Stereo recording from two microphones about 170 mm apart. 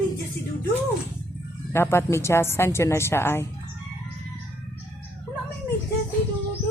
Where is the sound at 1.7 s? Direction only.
15° left (ahead or behind).